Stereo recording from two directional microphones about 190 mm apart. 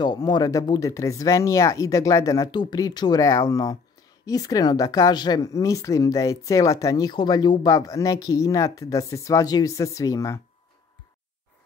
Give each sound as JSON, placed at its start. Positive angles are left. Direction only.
{"t": 0.0, "sound": "speech", "side_deg": 20}